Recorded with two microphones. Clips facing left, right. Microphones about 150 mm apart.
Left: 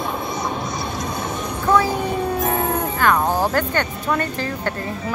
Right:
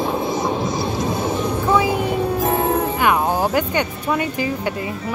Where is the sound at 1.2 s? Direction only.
5° right (ahead or behind).